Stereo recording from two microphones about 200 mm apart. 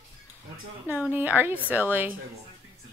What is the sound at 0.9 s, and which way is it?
A woman's voice, 10° right (ahead or behind).